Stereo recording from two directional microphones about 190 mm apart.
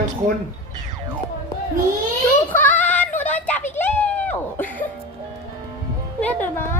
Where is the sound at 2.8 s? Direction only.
10° left (ahead or behind).